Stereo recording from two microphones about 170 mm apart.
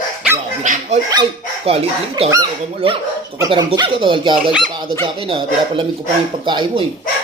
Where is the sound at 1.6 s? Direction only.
35° right (ahead or behind).